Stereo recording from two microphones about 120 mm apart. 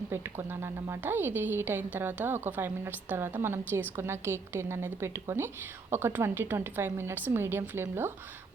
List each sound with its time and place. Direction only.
0.1 s a woman's voice: 20° right (ahead or behind)